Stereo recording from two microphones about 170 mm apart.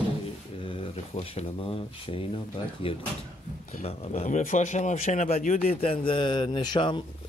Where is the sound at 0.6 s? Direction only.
30° left (ahead or behind).